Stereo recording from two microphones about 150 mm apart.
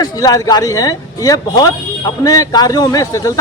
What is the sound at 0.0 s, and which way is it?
Speech, 25° left (ahead or behind).